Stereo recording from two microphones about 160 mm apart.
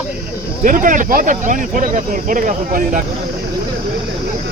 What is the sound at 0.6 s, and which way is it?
Speech, 55° right (ahead or behind).